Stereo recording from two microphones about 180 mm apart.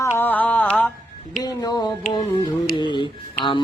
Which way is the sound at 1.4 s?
20° left (ahead or behind).